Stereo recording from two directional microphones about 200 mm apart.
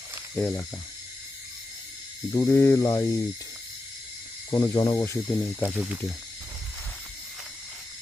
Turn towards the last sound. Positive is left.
turn(degrees=-5)  # may be behind; listen again after turning